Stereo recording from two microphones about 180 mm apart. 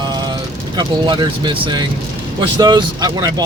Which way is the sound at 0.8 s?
25° right (ahead or behind).